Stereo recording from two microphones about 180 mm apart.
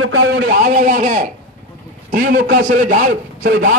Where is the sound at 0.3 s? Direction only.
65° right (ahead or behind).